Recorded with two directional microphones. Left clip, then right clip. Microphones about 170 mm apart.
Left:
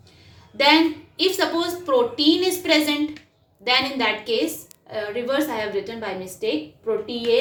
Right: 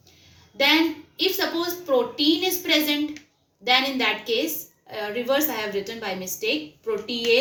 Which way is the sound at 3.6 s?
50° left (ahead or behind).